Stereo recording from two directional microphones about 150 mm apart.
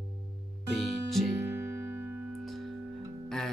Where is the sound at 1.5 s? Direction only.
15° right (ahead or behind).